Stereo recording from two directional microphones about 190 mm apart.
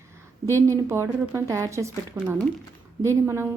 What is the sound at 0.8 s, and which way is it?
A woman's voice, 15° right (ahead or behind).